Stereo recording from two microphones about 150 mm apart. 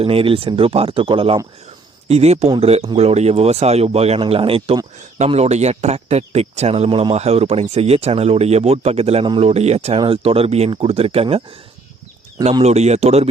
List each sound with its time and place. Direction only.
0.0 s speech: 40° right (ahead or behind)